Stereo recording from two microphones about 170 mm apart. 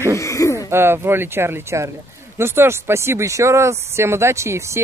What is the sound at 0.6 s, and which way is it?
Speech, 15° right (ahead or behind).